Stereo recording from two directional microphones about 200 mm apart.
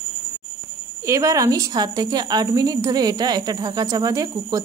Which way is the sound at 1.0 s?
15° right (ahead or behind).